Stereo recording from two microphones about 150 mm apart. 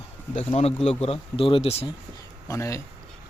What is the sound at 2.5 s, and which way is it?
Speech, 20° left (ahead or behind).